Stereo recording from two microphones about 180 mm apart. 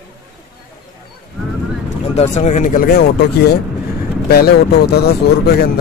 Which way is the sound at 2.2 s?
40° left (ahead or behind).